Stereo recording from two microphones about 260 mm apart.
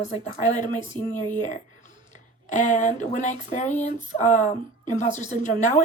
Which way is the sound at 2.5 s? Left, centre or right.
Left.